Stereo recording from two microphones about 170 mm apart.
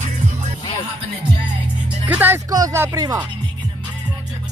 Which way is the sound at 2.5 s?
20° right (ahead or behind).